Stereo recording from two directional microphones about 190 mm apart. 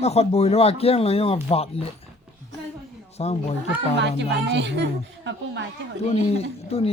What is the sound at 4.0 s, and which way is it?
Speech, 65° right (ahead or behind).